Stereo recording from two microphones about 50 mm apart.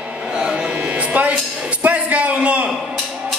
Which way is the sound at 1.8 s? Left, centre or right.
Right.